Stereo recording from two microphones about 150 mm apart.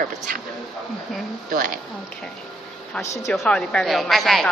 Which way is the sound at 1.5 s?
65° right (ahead or behind).